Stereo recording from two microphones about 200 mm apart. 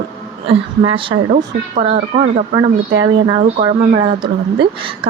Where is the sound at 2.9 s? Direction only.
75° right (ahead or behind).